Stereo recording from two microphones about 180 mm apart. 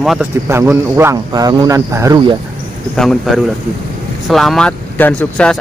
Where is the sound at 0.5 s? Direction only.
15° right (ahead or behind).